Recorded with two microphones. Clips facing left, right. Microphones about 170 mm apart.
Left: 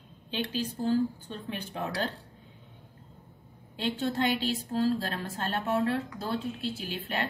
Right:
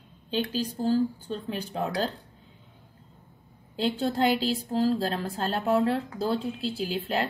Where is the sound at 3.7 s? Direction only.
35° right (ahead or behind).